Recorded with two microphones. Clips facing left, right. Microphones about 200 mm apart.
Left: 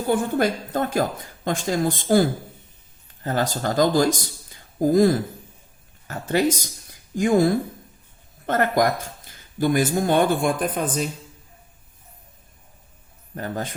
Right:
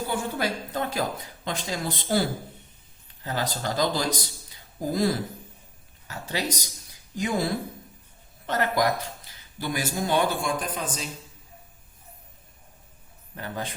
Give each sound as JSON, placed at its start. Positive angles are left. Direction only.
{"t": 0.1, "sound": "speech", "side_deg": 50}
{"t": 3.2, "sound": "a man's voice", "side_deg": 50}
{"t": 13.3, "sound": "speech", "side_deg": 45}